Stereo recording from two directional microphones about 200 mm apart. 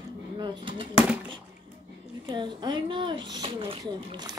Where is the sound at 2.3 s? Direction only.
25° right (ahead or behind).